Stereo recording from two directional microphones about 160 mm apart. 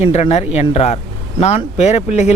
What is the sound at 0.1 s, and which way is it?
Speech, 40° left (ahead or behind).